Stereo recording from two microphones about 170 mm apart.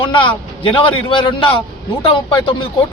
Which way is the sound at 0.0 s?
30° left (ahead or behind).